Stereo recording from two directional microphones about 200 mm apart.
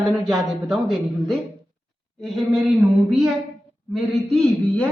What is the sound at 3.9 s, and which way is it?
Speech, centre (ahead or behind).